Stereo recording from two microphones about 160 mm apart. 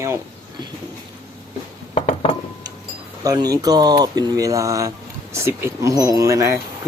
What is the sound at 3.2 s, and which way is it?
Speech, 25° right (ahead or behind).